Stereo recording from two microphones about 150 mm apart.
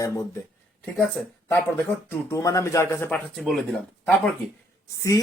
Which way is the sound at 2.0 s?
20° left (ahead or behind).